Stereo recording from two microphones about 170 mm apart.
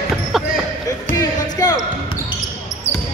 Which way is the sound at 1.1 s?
25° left (ahead or behind).